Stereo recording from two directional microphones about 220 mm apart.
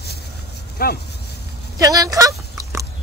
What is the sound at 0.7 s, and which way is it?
Speech, 45° left (ahead or behind).